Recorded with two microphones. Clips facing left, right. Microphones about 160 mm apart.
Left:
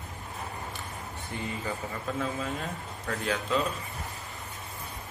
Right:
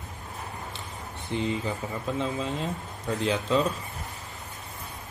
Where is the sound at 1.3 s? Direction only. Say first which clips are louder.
Right 6 dB; 20° right (ahead or behind).